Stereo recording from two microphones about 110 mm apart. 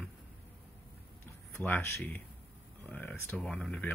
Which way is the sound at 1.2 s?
20° left (ahead or behind).